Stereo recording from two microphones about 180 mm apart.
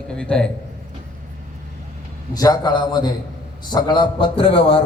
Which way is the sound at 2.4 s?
20° left (ahead or behind).